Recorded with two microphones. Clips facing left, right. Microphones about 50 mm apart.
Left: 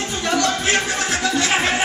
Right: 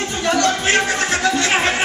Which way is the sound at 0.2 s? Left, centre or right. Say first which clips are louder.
Right 3 dB; centre.